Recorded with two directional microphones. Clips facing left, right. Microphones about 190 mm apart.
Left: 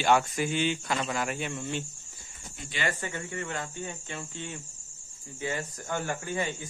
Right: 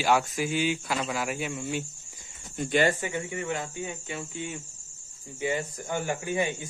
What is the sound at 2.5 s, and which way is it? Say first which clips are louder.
Speech: right 13 dB; 50° right (ahead or behind).